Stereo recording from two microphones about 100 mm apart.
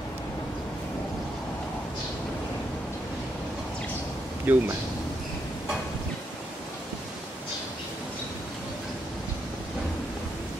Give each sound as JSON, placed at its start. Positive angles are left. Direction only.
{"t": 4.5, "sound": "speech", "side_deg": -20}